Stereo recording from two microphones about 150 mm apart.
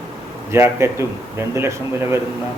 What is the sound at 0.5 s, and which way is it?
A man's voice, 15° right (ahead or behind).